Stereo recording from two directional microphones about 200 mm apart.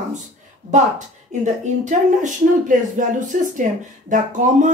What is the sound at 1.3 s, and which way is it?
A woman's voice, 35° right (ahead or behind).